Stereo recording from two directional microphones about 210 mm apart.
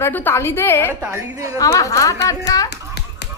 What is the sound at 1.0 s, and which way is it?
Speech, 15° right (ahead or behind).